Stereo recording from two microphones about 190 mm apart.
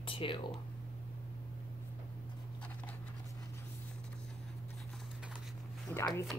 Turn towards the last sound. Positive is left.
turn(degrees=10)  # may be behind; listen again after turning